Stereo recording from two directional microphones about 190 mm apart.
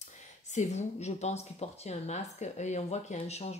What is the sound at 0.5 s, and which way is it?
Speech, 40° left (ahead or behind).